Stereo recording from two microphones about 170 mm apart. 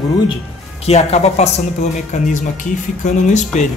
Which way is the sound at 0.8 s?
40° left (ahead or behind).